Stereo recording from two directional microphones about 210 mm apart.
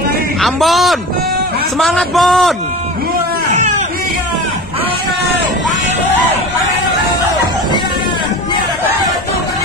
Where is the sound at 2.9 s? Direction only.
45° right (ahead or behind).